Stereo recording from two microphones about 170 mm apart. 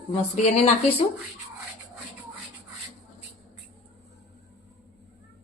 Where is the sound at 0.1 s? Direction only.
35° left (ahead or behind).